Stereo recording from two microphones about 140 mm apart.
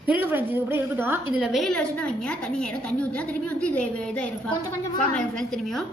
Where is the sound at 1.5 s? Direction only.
5° left (ahead or behind).